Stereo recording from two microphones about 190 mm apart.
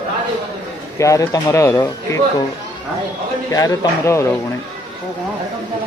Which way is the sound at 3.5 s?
15° left (ahead or behind).